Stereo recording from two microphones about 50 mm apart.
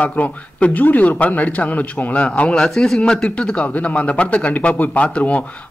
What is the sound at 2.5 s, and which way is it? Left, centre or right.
A man's voice, centre.